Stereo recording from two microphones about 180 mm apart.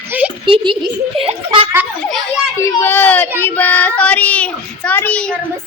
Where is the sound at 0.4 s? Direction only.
30° right (ahead or behind).